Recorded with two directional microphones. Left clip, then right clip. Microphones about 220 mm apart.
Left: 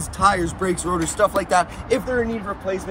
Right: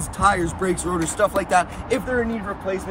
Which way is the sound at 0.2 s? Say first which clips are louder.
Left 1 dB; centre (ahead or behind).